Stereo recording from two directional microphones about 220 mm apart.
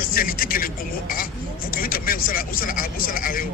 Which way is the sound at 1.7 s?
40° left (ahead or behind).